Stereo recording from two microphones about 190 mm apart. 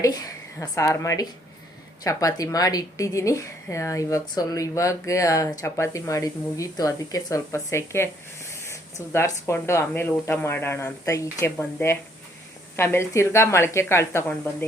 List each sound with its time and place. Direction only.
0.0 s a woman's voice: 20° left (ahead or behind)